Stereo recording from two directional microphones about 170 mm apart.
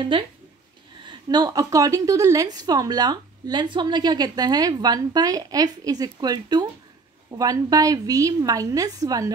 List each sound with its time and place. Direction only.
0.1 s a woman's voice: 30° right (ahead or behind)